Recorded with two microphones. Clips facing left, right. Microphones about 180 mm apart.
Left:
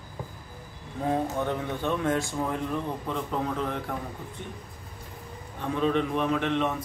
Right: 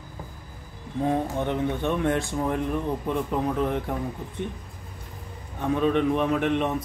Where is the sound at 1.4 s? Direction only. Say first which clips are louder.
Right 3 dB; 20° right (ahead or behind).